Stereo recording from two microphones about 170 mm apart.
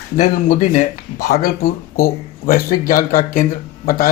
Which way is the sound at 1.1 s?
65° left (ahead or behind).